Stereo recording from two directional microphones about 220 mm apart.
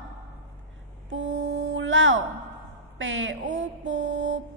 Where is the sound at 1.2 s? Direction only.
55° right (ahead or behind).